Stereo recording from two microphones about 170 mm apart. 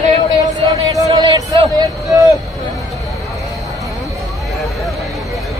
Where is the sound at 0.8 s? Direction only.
25° right (ahead or behind).